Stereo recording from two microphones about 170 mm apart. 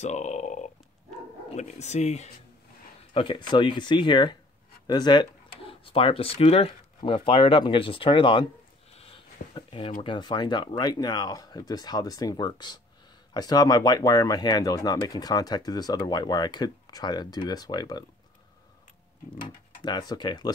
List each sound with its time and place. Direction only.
0.0 s a sound: 45° left (ahead or behind)
1.5 s speech: 40° left (ahead or behind)
3.1 s speech: 30° left (ahead or behind)
8.9 s a sound: 30° left (ahead or behind)
10.0 s speech: 25° left (ahead or behind)
19.4 s speech: 25° left (ahead or behind)